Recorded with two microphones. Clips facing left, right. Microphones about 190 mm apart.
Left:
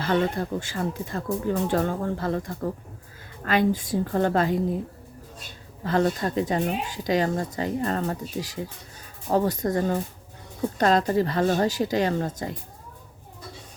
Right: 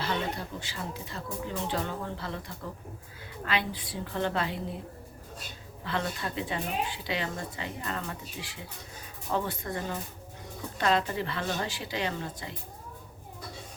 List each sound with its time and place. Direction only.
0.0 s speech: 50° left (ahead or behind)
5.8 s speech: 45° left (ahead or behind)